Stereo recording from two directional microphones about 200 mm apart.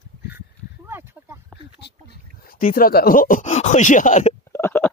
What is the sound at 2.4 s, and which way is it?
Speech, 45° left (ahead or behind).